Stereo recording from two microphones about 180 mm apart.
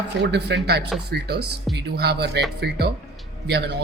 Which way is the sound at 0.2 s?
70° right (ahead or behind).